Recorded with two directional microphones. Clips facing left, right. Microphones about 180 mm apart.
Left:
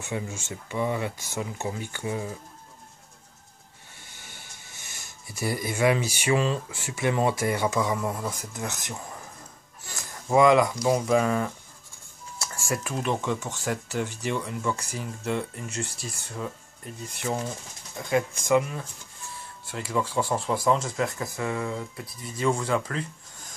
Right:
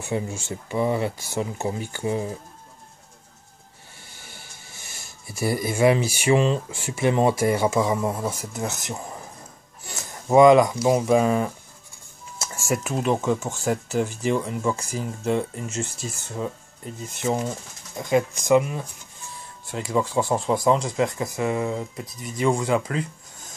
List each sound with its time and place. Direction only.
0.0 s speech: 35° right (ahead or behind)
5.3 s speech: 25° right (ahead or behind)
14.7 s speech: 10° right (ahead or behind)
15.0 s speech: 25° right (ahead or behind)